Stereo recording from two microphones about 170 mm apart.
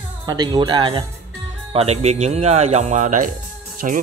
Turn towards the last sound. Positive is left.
turn(degrees=-45)  # may be behind; listen again after turning